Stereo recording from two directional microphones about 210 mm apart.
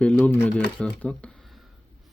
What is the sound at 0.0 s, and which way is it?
Speech, 5° left (ahead or behind).